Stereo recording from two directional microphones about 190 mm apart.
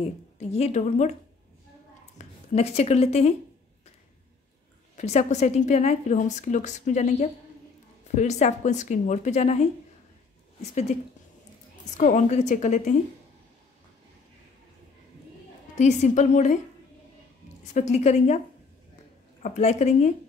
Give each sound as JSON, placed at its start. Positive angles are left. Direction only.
{"t": 0.4, "sound": "a woman's voice", "side_deg": 35}
{"t": 2.1, "sound": "speech", "side_deg": 35}
{"t": 4.9, "sound": "a woman's voice", "side_deg": 35}
{"t": 15.8, "sound": "a woman's voice", "side_deg": 40}
{"t": 17.7, "sound": "a woman's voice", "side_deg": 35}
{"t": 19.4, "sound": "a woman's voice", "side_deg": 35}